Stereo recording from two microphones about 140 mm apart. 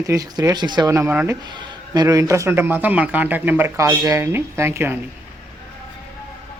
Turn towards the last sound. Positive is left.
turn(degrees=-15)  # may be behind; listen again after turning